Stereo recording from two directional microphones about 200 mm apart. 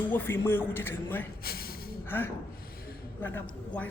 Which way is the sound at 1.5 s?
50° left (ahead or behind).